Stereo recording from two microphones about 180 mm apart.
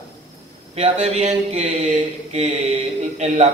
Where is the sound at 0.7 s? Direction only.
35° right (ahead or behind).